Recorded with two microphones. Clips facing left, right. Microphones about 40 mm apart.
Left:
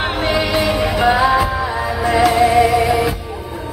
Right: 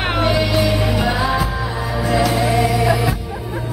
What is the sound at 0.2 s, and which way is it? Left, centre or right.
Music, left.